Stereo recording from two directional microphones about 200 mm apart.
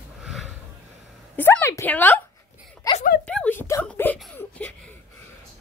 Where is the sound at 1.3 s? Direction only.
10° left (ahead or behind).